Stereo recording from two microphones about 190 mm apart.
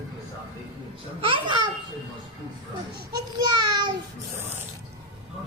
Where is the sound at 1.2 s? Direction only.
25° right (ahead or behind).